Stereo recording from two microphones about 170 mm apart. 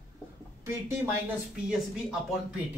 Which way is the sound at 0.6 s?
15° right (ahead or behind).